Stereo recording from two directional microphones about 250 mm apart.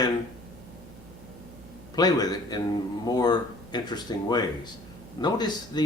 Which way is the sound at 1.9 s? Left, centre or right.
Centre.